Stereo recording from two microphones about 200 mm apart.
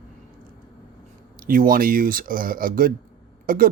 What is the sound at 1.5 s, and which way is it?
Speech, 45° right (ahead or behind).